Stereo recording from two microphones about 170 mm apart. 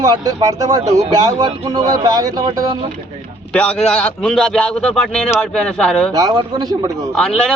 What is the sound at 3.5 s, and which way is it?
A man's voice, 5° left (ahead or behind).